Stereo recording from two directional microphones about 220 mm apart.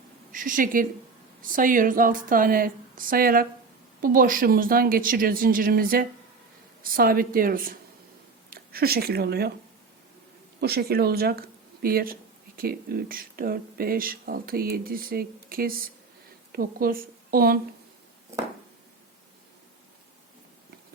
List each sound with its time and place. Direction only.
0.3 s a woman's voice: 40° right (ahead or behind)
10.6 s a woman's voice: 45° right (ahead or behind)